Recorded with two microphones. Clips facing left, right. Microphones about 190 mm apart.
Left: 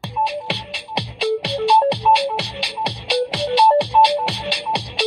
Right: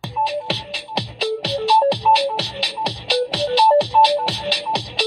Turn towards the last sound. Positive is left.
turn(degrees=0)  # may be behind; listen again after turning